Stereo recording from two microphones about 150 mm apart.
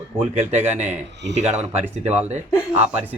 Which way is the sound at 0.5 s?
15° right (ahead or behind).